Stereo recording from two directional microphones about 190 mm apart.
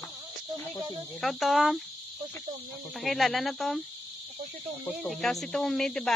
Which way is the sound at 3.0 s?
Centre (ahead or behind).